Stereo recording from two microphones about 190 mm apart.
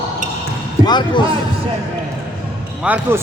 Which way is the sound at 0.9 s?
25° left (ahead or behind).